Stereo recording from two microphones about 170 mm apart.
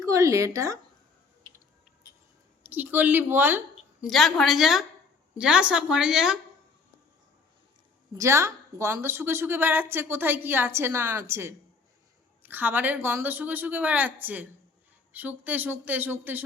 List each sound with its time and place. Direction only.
0.0 s speech: 20° right (ahead or behind)
2.6 s a woman's voice: 10° right (ahead or behind)
4.0 s a woman's voice: centre (ahead or behind)
8.1 s a woman's voice: 15° right (ahead or behind)